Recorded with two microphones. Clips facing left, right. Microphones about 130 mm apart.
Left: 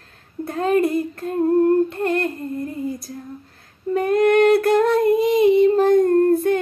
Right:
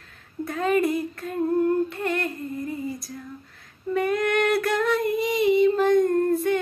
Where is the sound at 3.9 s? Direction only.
45° left (ahead or behind).